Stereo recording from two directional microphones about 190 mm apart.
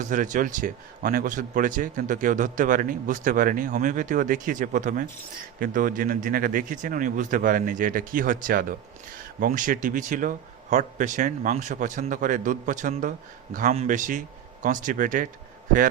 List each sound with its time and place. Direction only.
0.0 s a man's voice: 45° right (ahead or behind)